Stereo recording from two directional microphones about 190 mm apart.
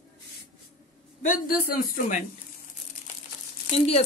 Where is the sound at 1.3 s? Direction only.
50° left (ahead or behind).